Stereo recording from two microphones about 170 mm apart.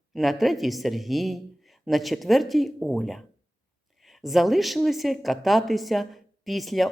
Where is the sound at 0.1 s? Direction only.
Centre (ahead or behind).